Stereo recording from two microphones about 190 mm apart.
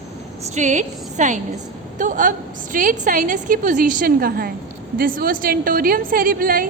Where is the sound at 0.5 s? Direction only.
40° right (ahead or behind).